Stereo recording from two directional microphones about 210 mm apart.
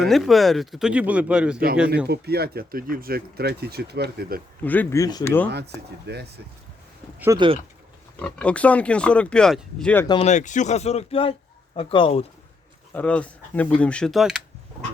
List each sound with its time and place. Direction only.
0.0 s speech: centre (ahead or behind)
2.0 s speech: 50° right (ahead or behind)
4.6 s speech: 10° left (ahead or behind)
6.1 s speech: 50° right (ahead or behind)
7.3 s speech: 25° right (ahead or behind)
8.1 s speech: 5° left (ahead or behind)
10.1 s speech: 30° left (ahead or behind)
12.9 s speech: 5° left (ahead or behind)